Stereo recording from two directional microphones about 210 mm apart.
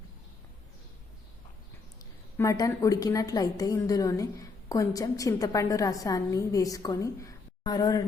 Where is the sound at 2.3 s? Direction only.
15° left (ahead or behind).